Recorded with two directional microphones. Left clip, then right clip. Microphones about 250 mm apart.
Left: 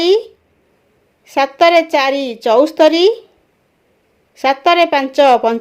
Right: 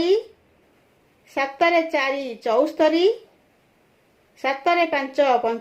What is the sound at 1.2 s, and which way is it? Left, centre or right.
A woman's voice, left.